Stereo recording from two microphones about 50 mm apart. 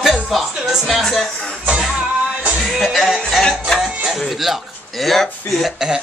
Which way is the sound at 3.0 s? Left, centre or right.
Centre.